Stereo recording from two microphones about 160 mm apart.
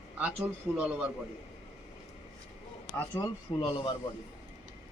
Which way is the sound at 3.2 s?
15° left (ahead or behind).